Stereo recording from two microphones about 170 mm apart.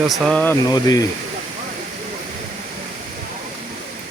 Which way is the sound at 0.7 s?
25° left (ahead or behind).